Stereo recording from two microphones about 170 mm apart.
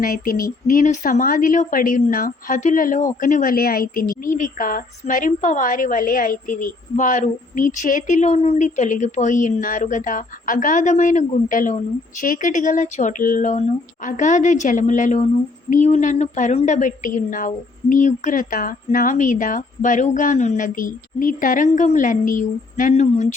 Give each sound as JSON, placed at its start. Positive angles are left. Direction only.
{"t": 0.0, "sound": "speech", "side_deg": 55}